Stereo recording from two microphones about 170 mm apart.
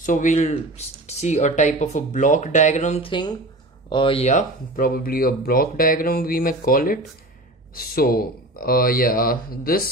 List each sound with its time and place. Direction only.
0.0 s speech: 50° left (ahead or behind)
3.1 s speech: 25° left (ahead or behind)
4.3 s speech: 50° left (ahead or behind)